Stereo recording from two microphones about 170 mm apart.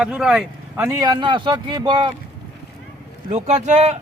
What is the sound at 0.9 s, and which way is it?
Speech, 20° right (ahead or behind).